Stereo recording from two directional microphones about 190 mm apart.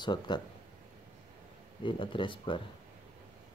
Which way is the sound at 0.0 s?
25° left (ahead or behind).